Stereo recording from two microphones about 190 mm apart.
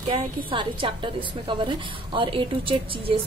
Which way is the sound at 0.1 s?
25° right (ahead or behind).